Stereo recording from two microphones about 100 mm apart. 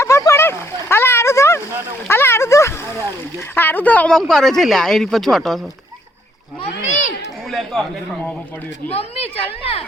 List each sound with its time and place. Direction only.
0.0 s a sound: 30° left (ahead or behind)
3.5 s speech: 20° left (ahead or behind)
4.2 s speech: 5° left (ahead or behind)
7.5 s speech: centre (ahead or behind)
8.9 s a woman's voice: 90° left